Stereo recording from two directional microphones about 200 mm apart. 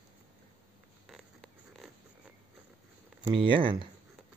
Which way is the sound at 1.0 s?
Centre (ahead or behind).